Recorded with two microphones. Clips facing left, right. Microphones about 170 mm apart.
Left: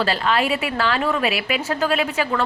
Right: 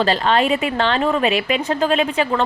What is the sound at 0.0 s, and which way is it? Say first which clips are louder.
Speech: right 4 dB; 30° right (ahead or behind).